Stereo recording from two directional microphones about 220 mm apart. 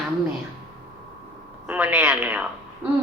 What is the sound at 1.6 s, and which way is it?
Speech, 5° right (ahead or behind).